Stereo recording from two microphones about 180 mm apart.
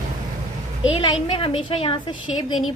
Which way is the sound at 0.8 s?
30° left (ahead or behind).